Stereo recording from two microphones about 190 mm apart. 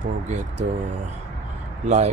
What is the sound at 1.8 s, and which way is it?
Speech, 35° right (ahead or behind).